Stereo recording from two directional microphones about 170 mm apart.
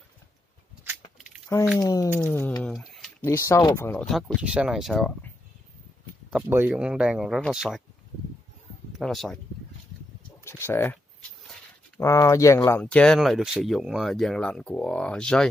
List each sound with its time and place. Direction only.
1.8 s speech: 20° left (ahead or behind)
2.2 s speech: 10° left (ahead or behind)
2.6 s a sound: centre (ahead or behind)
3.3 s speech: 15° left (ahead or behind)
3.9 s speech: centre (ahead or behind)
6.3 s speech: 10° right (ahead or behind)
8.9 s speech: centre (ahead or behind)
10.4 s speech: 15° left (ahead or behind)
12.0 s speech: 20° left (ahead or behind)